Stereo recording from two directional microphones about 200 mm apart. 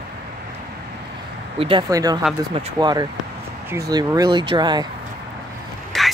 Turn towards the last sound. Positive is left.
turn(degrees=0)  # may be behind; listen again after turning